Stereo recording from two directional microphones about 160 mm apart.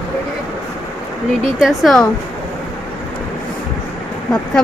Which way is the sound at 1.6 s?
Centre (ahead or behind).